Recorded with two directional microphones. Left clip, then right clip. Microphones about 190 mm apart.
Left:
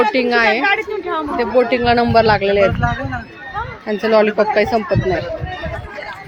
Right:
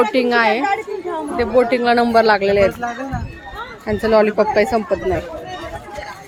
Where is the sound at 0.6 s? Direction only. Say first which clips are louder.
Left 3 dB; 40° left (ahead or behind).